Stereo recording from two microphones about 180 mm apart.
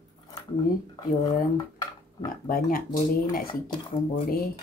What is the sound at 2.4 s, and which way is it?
Speech, 55° left (ahead or behind).